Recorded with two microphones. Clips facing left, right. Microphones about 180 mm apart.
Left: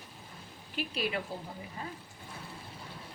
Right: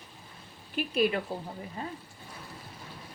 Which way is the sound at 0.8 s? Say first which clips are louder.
Right 4 dB; 50° right (ahead or behind).